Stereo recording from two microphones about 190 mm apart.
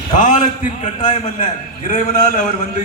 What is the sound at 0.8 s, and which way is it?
Speech, 40° left (ahead or behind).